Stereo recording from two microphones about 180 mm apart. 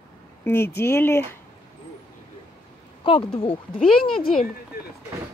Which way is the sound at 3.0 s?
25° left (ahead or behind).